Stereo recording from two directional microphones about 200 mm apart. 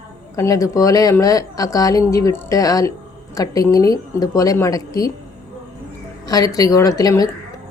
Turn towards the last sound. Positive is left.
turn(degrees=15)  # may be behind; listen again after turning